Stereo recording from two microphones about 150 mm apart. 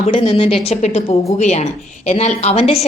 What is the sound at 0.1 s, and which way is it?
A woman's voice, 35° left (ahead or behind).